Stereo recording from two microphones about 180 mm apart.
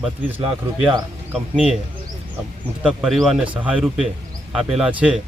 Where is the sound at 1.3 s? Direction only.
5° right (ahead or behind).